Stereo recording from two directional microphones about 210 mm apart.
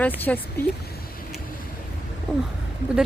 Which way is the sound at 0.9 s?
45° left (ahead or behind).